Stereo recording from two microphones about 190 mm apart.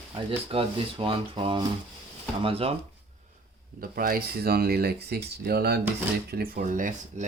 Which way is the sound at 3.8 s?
50° right (ahead or behind).